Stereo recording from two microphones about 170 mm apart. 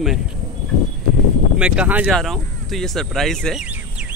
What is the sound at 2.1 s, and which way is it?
Speech, centre (ahead or behind).